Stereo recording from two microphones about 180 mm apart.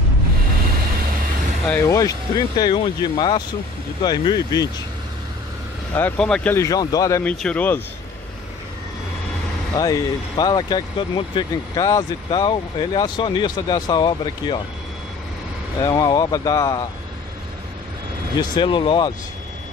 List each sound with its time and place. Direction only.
1.7 s speech: 15° left (ahead or behind)
5.9 s speech: 10° left (ahead or behind)
9.8 s speech: 20° left (ahead or behind)
15.8 s speech: 20° left (ahead or behind)
18.4 s speech: 25° left (ahead or behind)